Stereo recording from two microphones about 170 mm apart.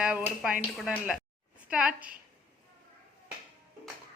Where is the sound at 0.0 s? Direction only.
10° right (ahead or behind).